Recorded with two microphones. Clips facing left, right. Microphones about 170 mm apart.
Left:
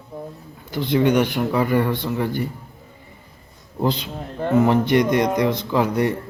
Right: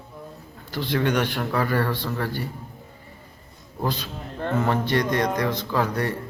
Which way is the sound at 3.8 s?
20° left (ahead or behind).